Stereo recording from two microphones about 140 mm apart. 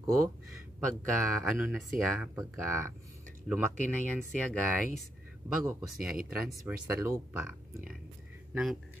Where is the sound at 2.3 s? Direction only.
20° right (ahead or behind).